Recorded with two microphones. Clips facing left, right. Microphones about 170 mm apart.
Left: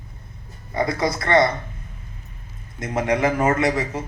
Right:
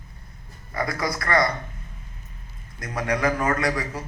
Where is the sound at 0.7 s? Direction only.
25° left (ahead or behind).